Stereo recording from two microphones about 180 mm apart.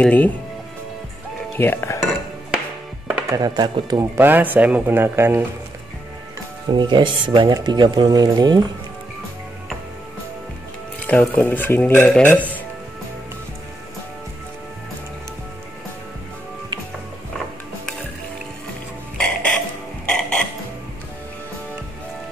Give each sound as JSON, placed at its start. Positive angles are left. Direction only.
{"t": 0.0, "sound": "speech", "side_deg": 10}
{"t": 1.6, "sound": "speech", "side_deg": 10}
{"t": 3.3, "sound": "speech", "side_deg": -20}
{"t": 4.2, "sound": "speech", "side_deg": -10}
{"t": 6.7, "sound": "speech", "side_deg": -25}
{"t": 11.1, "sound": "speech", "side_deg": 10}
{"t": 19.1, "sound": "burping", "side_deg": 5}
{"t": 20.1, "sound": "music", "side_deg": 5}